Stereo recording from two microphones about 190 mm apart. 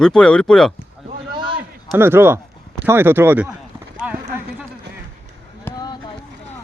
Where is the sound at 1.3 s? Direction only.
25° right (ahead or behind).